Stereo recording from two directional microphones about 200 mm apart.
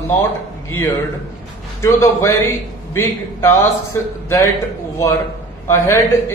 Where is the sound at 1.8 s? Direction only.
15° left (ahead or behind).